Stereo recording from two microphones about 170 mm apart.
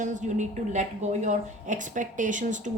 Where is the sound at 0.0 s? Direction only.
45° right (ahead or behind).